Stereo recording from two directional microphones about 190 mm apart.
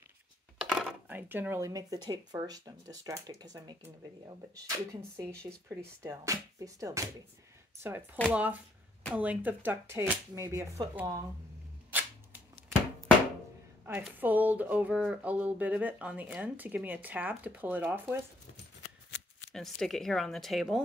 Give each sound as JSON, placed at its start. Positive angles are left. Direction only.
{"t": 0.6, "sound": "speech", "side_deg": -5}
{"t": 5.4, "sound": "speech", "side_deg": -15}
{"t": 11.9, "sound": "camera", "side_deg": -10}
{"t": 13.8, "sound": "speech", "side_deg": -10}
{"t": 19.0, "sound": "shuffling cards", "side_deg": 70}
{"t": 19.5, "sound": "speech", "side_deg": 0}